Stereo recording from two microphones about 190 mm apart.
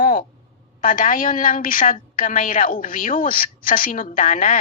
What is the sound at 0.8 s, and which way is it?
A woman's voice, 45° left (ahead or behind).